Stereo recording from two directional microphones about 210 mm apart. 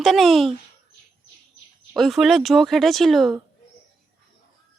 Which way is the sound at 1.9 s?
Centre (ahead or behind).